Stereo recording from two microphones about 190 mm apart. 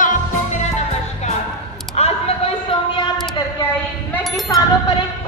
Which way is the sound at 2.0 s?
35° left (ahead or behind).